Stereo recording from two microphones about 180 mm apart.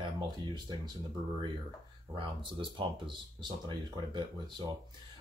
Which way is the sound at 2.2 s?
30° right (ahead or behind).